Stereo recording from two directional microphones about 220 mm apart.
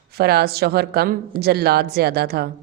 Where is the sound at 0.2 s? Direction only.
45° right (ahead or behind).